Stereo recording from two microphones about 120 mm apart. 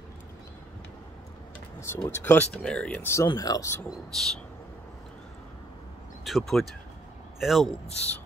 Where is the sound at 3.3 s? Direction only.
30° left (ahead or behind).